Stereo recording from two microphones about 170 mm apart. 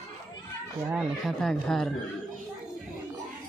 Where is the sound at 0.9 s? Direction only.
Centre (ahead or behind).